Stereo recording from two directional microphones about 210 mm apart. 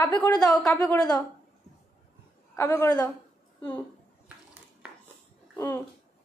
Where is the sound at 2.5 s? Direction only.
10° left (ahead or behind).